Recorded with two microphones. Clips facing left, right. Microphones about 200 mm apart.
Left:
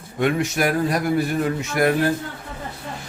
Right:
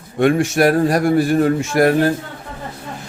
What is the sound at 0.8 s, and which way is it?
Speech, 70° right (ahead or behind).